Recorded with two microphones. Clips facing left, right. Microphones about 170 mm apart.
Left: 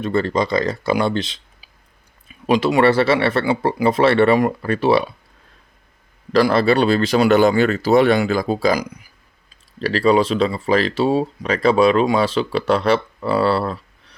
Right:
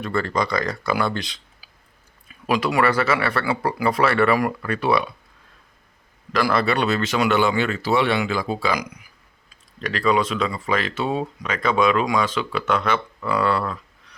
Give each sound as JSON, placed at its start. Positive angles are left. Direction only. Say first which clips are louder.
{"t": 0.0, "sound": "speech", "louder": "left 4 dB", "side_deg": 25}
{"t": 6.3, "sound": "speech", "louder": "left 6 dB", "side_deg": 30}